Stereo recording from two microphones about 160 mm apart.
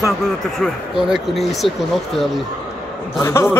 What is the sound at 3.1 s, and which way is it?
Speech, 15° left (ahead or behind).